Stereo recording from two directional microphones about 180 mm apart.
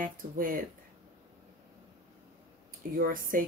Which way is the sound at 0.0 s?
50° right (ahead or behind).